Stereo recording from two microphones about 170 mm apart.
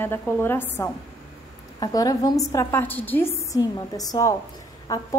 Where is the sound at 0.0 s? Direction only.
15° left (ahead or behind).